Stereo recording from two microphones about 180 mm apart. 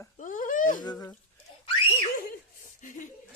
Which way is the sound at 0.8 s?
20° left (ahead or behind).